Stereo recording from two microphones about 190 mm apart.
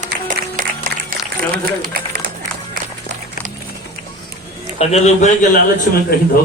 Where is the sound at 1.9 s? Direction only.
50° right (ahead or behind).